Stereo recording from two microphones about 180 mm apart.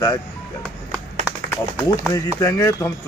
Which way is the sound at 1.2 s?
5° right (ahead or behind).